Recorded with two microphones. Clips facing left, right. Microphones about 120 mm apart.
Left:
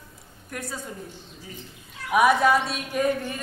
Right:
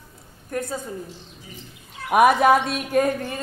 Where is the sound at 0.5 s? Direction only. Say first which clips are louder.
Right 8 dB; 35° right (ahead or behind).